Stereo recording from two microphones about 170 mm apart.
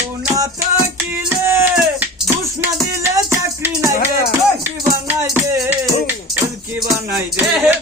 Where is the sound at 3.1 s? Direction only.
15° right (ahead or behind).